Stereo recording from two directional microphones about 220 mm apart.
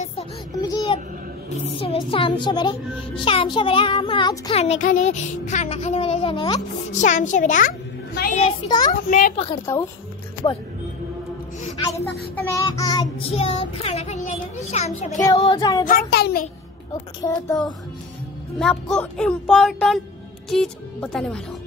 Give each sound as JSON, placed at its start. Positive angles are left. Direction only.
{"t": 0.6, "sound": "a sound", "side_deg": 20}
{"t": 1.8, "sound": "a child's voice", "side_deg": 25}
{"t": 6.9, "sound": "a child's voice", "side_deg": 35}
{"t": 9.7, "sound": "child singing", "side_deg": 10}
{"t": 10.4, "sound": "a child's voice", "side_deg": 20}
{"t": 12.4, "sound": "a child's voice", "side_deg": 15}
{"t": 15.1, "sound": "child singing", "side_deg": 20}
{"t": 15.8, "sound": "a child's voice", "side_deg": 40}
{"t": 17.2, "sound": "child singing", "side_deg": 15}
{"t": 18.6, "sound": "music", "side_deg": 5}